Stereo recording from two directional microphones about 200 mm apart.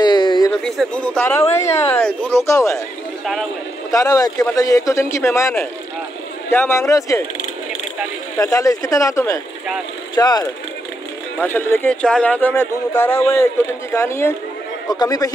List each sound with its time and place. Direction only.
0.0 s a sound: 20° left (ahead or behind)
0.7 s speech: 5° left (ahead or behind)
3.9 s speech: 15° left (ahead or behind)
8.4 s a man's voice: 15° left (ahead or behind)